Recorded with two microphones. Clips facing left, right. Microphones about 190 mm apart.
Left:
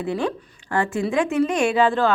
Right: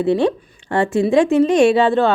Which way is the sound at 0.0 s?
25° right (ahead or behind).